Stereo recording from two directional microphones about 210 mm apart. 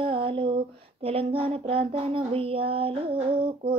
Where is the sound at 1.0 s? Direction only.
25° right (ahead or behind).